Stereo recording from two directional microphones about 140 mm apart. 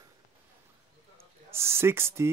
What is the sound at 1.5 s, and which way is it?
Speech, 20° right (ahead or behind).